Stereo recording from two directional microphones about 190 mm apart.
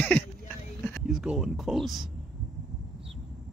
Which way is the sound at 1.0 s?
5° right (ahead or behind).